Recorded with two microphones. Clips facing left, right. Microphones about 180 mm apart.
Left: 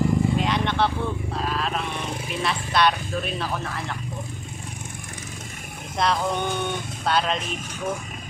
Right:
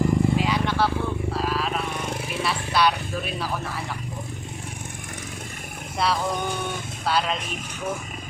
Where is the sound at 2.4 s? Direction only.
5° right (ahead or behind).